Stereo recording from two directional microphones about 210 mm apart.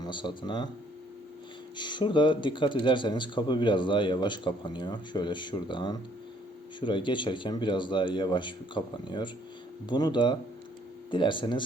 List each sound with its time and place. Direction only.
0.0 s speech: 20° left (ahead or behind)
1.7 s speech: 20° left (ahead or behind)